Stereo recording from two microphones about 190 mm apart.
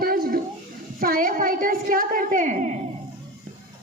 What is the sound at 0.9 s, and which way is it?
A woman's voice, 50° right (ahead or behind).